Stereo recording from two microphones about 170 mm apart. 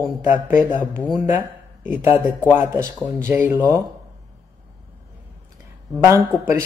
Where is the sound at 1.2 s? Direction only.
10° right (ahead or behind).